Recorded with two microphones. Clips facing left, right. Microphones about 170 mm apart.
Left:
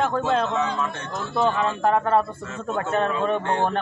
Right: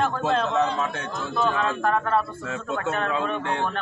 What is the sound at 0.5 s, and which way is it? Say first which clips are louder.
Speech: right 1 dB; 70° right (ahead or behind).